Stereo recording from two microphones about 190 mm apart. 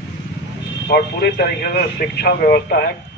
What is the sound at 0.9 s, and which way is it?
Speech, 60° left (ahead or behind).